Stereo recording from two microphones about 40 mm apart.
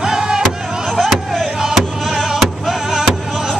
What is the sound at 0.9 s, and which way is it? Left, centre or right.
Chop, centre.